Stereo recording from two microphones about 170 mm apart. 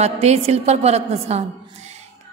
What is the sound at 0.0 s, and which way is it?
A woman's voice, 40° right (ahead or behind).